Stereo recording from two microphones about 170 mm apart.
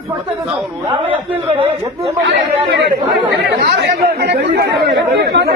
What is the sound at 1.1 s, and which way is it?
Speech, 10° right (ahead or behind).